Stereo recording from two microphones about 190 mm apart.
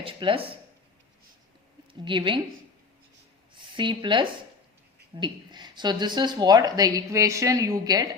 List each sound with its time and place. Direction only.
0.0 s speech: 30° right (ahead or behind)
1.9 s speech: 25° right (ahead or behind)
3.8 s speech: 25° right (ahead or behind)